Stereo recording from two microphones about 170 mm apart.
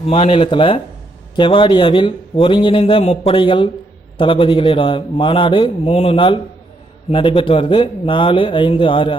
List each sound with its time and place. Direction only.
0.1 s a man's voice: 35° left (ahead or behind)